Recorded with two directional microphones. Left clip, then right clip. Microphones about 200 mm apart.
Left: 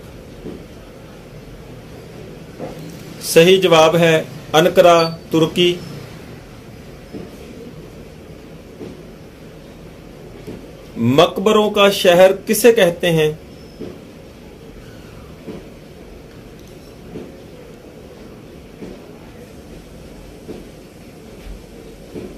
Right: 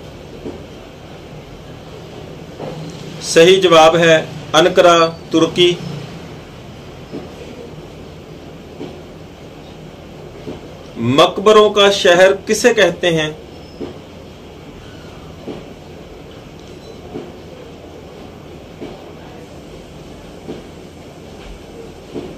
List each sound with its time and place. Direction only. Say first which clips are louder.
3.3 s a man's voice: right 2 dB; 40° left (ahead or behind)
11.1 s a man's voice: right 3 dB; 40° left (ahead or behind)